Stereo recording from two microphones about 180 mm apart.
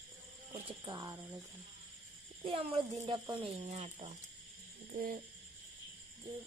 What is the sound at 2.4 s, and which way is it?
Speech, 30° right (ahead or behind).